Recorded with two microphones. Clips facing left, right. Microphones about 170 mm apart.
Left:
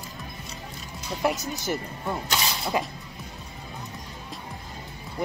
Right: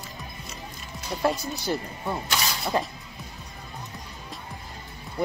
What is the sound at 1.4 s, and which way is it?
Speech, 20° left (ahead or behind).